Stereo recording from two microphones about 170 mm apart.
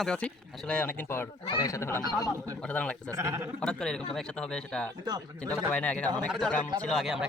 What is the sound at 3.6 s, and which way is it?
A man's voice, 5° left (ahead or behind).